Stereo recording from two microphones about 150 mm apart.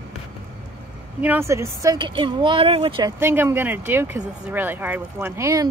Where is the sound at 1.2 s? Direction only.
15° right (ahead or behind).